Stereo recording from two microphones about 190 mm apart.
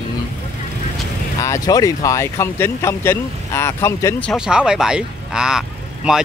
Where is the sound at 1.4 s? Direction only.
20° left (ahead or behind).